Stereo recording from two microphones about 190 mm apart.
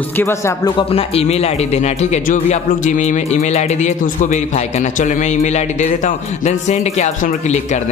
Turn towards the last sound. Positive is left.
turn(degrees=40)  # may be behind; listen again after turning